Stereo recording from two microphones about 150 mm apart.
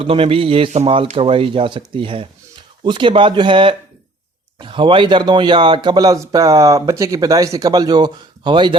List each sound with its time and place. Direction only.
0.0 s speech: 40° right (ahead or behind)